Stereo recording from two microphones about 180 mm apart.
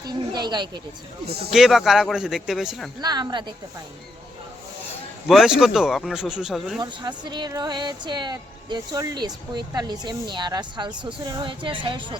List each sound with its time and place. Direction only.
0.1 s speech: 25° right (ahead or behind)
1.5 s speech: centre (ahead or behind)
3.0 s speech: 25° right (ahead or behind)
5.3 s speech: centre (ahead or behind)
6.7 s speech: 25° right (ahead or behind)